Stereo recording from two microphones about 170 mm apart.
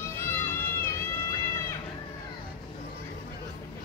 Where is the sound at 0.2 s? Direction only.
15° left (ahead or behind).